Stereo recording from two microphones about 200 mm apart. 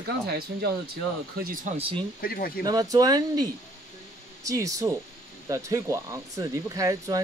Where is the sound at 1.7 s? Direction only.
25° right (ahead or behind).